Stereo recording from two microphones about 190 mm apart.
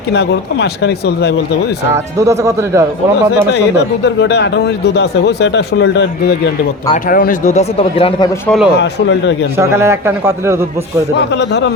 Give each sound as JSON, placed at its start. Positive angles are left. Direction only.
{"t": 0.1, "sound": "a man's voice", "side_deg": 65}
{"t": 2.1, "sound": "a man's voice", "side_deg": -15}
{"t": 3.5, "sound": "a man's voice", "side_deg": 65}
{"t": 6.9, "sound": "speech", "side_deg": 45}
{"t": 8.4, "sound": "a man's voice", "side_deg": 0}
{"t": 8.7, "sound": "a man's voice", "side_deg": 70}
{"t": 9.6, "sound": "a man's voice", "side_deg": -15}
{"t": 11.2, "sound": "a man's voice", "side_deg": 65}